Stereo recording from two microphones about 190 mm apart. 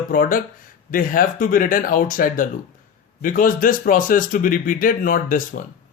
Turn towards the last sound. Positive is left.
turn(degrees=45)  # may be behind; listen again after turning